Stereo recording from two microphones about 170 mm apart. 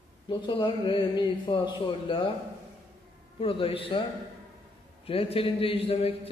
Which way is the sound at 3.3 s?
35° left (ahead or behind).